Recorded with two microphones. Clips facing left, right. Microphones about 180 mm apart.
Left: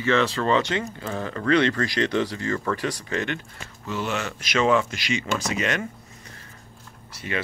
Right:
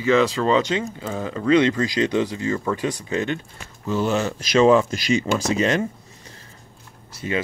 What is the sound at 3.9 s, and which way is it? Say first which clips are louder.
Speech: right 7 dB; 35° right (ahead or behind).